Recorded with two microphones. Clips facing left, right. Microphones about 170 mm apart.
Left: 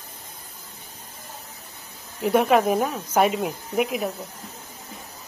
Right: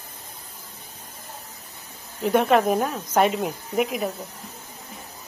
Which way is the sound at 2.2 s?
5° left (ahead or behind).